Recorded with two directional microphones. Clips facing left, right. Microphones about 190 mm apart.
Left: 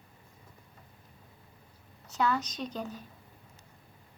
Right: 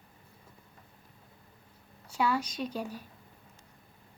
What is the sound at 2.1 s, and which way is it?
Speech, 10° right (ahead or behind).